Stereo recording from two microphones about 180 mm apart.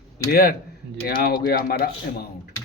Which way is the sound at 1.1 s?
55° left (ahead or behind).